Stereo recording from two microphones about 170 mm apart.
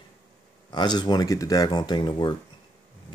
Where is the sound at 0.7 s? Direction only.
25° left (ahead or behind).